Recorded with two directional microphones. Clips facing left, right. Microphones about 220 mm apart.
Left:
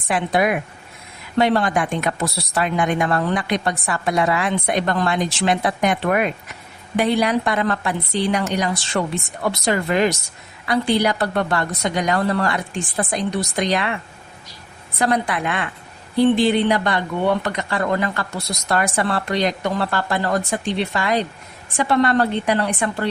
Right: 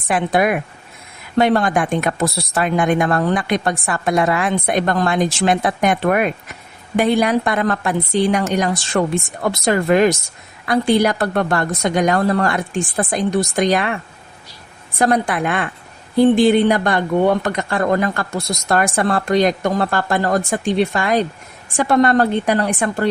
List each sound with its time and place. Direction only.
0.1 s speech: 50° right (ahead or behind)
14.9 s speech: 45° right (ahead or behind)